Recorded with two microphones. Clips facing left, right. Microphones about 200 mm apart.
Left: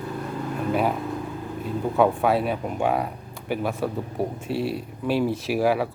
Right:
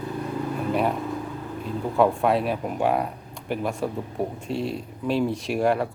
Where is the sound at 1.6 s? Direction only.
Centre (ahead or behind).